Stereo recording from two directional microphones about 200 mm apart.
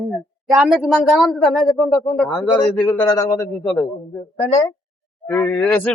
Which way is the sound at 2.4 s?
15° left (ahead or behind).